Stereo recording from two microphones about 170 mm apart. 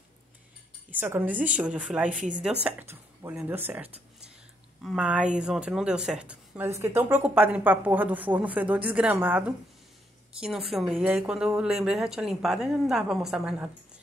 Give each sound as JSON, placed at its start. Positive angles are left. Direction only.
{"t": 0.8, "sound": "speech", "side_deg": -10}
{"t": 2.0, "sound": "a woman's voice", "side_deg": -50}
{"t": 2.6, "sound": "a woman's voice", "side_deg": -15}